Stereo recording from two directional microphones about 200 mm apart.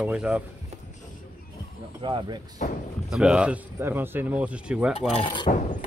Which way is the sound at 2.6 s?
45° left (ahead or behind).